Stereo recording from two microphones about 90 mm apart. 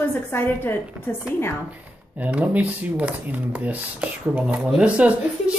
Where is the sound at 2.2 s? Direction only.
15° right (ahead or behind).